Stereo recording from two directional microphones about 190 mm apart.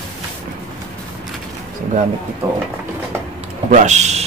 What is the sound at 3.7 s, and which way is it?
Speech, 35° right (ahead or behind).